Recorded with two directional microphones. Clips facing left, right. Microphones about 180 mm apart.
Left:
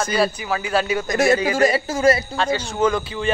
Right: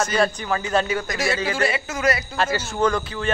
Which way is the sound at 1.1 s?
45° left (ahead or behind).